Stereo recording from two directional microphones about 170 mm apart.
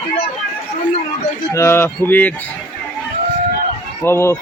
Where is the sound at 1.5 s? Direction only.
15° left (ahead or behind).